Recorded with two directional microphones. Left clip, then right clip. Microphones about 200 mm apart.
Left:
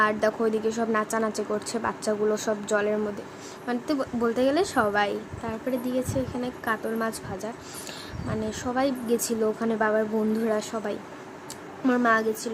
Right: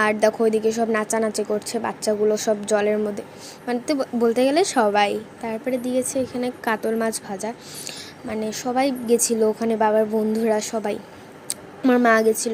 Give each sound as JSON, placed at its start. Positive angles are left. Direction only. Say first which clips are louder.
{"t": 0.0, "sound": "a woman's voice", "louder": "right 5 dB", "side_deg": -20}
{"t": 11.9, "sound": "a woman's voice", "louder": "right 6 dB", "side_deg": -30}